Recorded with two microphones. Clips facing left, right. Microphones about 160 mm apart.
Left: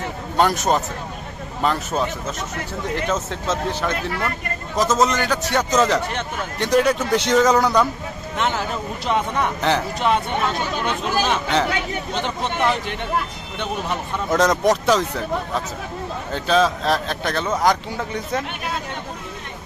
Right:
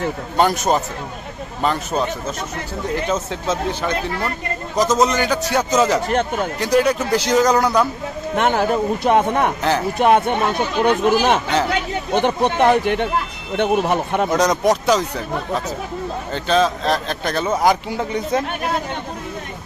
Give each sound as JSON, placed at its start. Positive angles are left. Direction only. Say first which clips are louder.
{"t": 0.4, "sound": "a man's voice", "louder": "right 1 dB", "side_deg": 0}
{"t": 3.1, "sound": "a man's voice", "louder": "right 2 dB", "side_deg": 0}
{"t": 3.9, "sound": "speech", "louder": "right 2 dB", "side_deg": -35}
{"t": 4.7, "sound": "a man's voice", "louder": "right 2 dB", "side_deg": 0}
{"t": 8.4, "sound": "speech", "louder": "right 6 dB", "side_deg": -50}
{"t": 9.6, "sound": "a man's voice", "louder": "right 1 dB", "side_deg": 0}
{"t": 9.9, "sound": "speech", "louder": "right 5 dB", "side_deg": -55}
{"t": 14.3, "sound": "a man's voice", "louder": "left 1 dB", "side_deg": 0}
{"t": 16.3, "sound": "a man's voice", "louder": "right 1 dB", "side_deg": 0}